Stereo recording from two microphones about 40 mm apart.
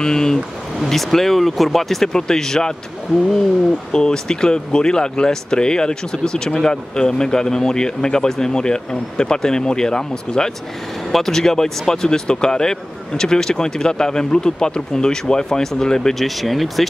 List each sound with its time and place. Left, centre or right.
0.0 s speech: centre
3.9 s speech: centre
16.3 s speech: centre